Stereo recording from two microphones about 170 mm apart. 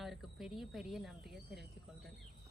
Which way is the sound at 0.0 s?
Centre (ahead or behind).